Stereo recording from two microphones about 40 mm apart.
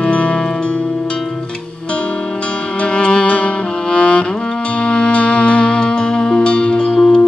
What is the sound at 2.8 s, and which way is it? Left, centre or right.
Music, left.